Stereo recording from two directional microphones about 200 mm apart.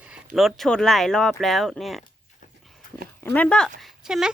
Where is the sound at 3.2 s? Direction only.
5° left (ahead or behind).